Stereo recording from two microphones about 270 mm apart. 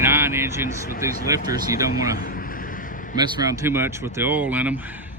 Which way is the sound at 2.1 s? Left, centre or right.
Left.